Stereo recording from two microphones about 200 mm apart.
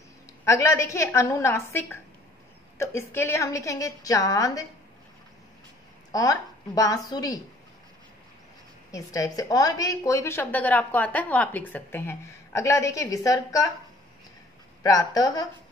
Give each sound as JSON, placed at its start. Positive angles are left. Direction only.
{"t": 0.5, "sound": "a woman's voice", "side_deg": 15}
{"t": 6.1, "sound": "a woman's voice", "side_deg": 15}
{"t": 8.9, "sound": "a woman's voice", "side_deg": 15}
{"t": 14.8, "sound": "a woman's voice", "side_deg": 15}